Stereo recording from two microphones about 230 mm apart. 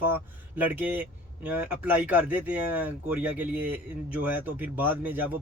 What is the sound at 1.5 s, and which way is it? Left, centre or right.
Speech, centre.